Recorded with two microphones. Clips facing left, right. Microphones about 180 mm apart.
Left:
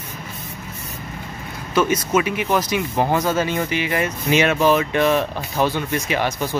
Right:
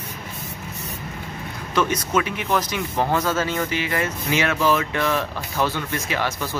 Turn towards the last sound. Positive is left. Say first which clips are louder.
# left 4 dB
turn(degrees=20)  # may be behind; listen again after turning